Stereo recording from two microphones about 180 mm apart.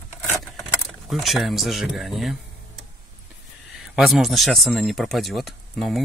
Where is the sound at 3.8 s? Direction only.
Centre (ahead or behind).